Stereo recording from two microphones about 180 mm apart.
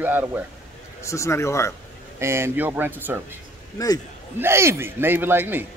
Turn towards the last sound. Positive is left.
turn(degrees=-10)  # may be behind; listen again after turning